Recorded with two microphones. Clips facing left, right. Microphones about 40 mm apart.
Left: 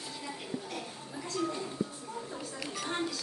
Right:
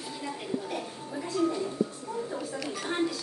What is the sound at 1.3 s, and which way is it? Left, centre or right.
Music, centre.